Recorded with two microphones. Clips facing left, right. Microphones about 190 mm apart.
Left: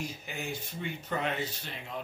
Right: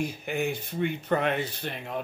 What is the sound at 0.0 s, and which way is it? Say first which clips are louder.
Speech: right 9 dB; 60° right (ahead or behind).